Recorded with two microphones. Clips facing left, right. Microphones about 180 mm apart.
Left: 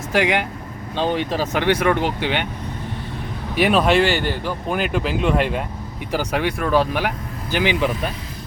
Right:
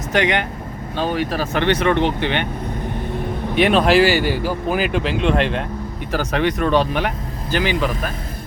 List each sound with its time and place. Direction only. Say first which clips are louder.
0.1 s speech: even; 10° left (ahead or behind)
0.9 s speech: even; 20° left (ahead or behind)
3.5 s speech: right 2 dB; centre (ahead or behind)
7.5 s speech: even; 15° left (ahead or behind)